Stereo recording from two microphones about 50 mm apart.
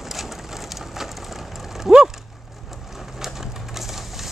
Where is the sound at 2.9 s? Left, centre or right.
Centre.